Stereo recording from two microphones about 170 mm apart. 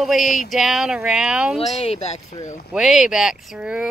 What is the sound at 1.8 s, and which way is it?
Speech, 35° left (ahead or behind).